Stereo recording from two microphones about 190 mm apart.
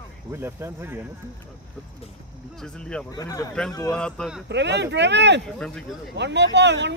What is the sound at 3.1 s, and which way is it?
Speech, 20° left (ahead or behind).